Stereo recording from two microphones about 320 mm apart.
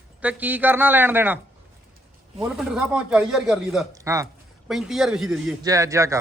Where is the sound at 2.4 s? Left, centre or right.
Centre.